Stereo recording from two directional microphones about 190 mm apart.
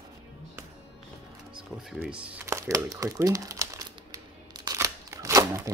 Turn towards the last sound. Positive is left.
turn(degrees=-15)  # may be behind; listen again after turning